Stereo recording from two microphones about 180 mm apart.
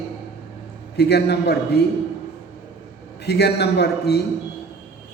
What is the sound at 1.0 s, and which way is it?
Speech, 65° left (ahead or behind).